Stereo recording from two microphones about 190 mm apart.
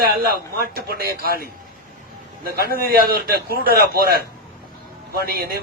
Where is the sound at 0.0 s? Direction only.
55° right (ahead or behind).